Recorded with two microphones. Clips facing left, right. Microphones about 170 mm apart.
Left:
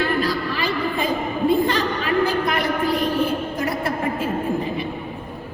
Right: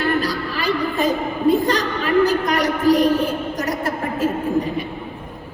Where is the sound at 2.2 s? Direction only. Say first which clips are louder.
Right 3 dB; 40° right (ahead or behind).